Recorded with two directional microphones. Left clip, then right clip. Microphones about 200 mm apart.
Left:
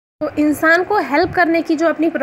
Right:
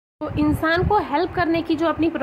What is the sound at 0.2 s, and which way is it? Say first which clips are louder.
A woman's voice: left 6 dB; 20° left (ahead or behind).